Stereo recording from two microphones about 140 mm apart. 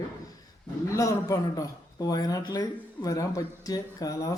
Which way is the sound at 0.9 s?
25° left (ahead or behind).